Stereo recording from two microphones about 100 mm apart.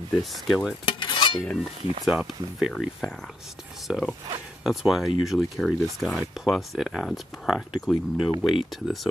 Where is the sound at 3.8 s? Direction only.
Centre (ahead or behind).